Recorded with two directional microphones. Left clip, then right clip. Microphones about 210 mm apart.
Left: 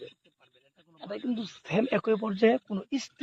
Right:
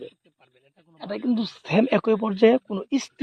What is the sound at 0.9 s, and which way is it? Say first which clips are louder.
A man's voice: right 7 dB; 50° right (ahead or behind).